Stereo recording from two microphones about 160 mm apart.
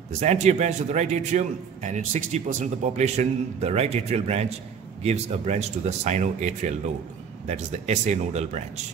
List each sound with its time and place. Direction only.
0.2 s a man's voice: 45° right (ahead or behind)